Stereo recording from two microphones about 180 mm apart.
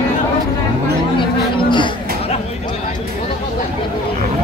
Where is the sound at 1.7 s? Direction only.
25° left (ahead or behind).